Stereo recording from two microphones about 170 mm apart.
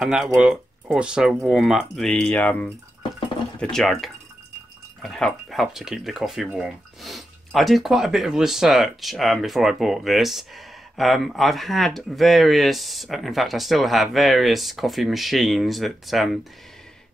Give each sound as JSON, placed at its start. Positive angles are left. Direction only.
{"t": 0.0, "sound": "speech", "side_deg": 0}
{"t": 3.7, "sound": "speech", "side_deg": 0}